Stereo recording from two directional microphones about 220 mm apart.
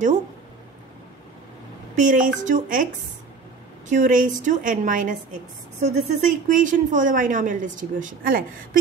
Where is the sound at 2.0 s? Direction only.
35° right (ahead or behind).